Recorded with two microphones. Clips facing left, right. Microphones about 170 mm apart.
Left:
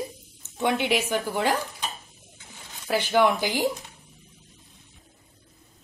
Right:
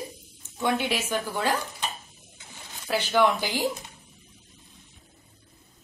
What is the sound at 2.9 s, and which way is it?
Speech, 15° left (ahead or behind).